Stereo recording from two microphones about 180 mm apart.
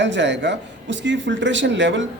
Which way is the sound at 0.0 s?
85° right.